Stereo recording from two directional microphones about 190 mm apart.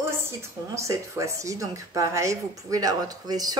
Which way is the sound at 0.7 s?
15° right (ahead or behind).